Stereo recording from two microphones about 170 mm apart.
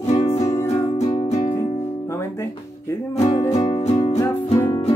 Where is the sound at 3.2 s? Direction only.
35° left (ahead or behind).